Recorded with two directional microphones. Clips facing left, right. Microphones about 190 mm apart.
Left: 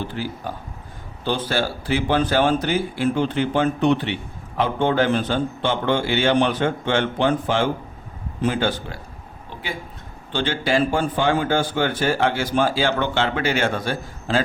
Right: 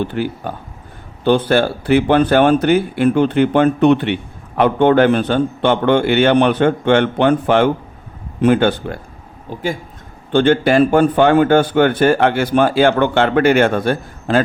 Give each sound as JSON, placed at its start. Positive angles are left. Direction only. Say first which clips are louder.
{"t": 0.0, "sound": "speech", "louder": "right 7 dB", "side_deg": -60}
{"t": 9.5, "sound": "speech", "louder": "right 10 dB", "side_deg": -45}
{"t": 10.3, "sound": "speech", "louder": "right 9 dB", "side_deg": -55}